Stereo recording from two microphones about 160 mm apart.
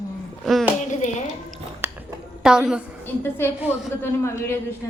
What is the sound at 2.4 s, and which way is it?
Speech, 5° right (ahead or behind).